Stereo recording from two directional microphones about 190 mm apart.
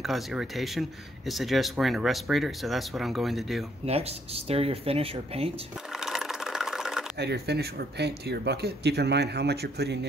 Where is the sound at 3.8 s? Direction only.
35° right (ahead or behind).